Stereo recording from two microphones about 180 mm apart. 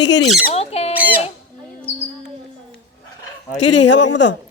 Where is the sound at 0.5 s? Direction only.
35° left (ahead or behind).